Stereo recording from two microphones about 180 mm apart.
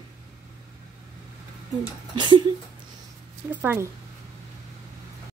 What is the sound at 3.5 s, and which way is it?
Speech, 10° right (ahead or behind).